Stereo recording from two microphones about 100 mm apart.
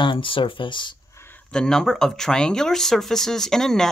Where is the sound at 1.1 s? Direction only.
20° left (ahead or behind).